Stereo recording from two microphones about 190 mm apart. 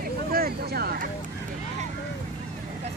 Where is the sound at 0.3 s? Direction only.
50° right (ahead or behind).